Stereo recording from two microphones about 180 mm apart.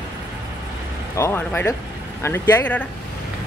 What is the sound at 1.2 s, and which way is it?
Speech, 10° left (ahead or behind).